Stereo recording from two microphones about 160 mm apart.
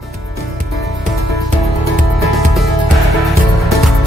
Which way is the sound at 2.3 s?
Centre (ahead or behind).